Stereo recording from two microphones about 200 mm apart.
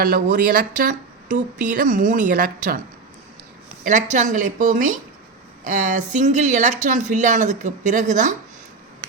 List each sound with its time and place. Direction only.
0.0 s speech: 45° right (ahead or behind)
3.8 s speech: 35° right (ahead or behind)